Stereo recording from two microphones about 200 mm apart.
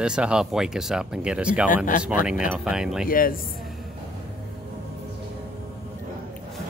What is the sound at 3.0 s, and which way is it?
Speech, 45° left (ahead or behind).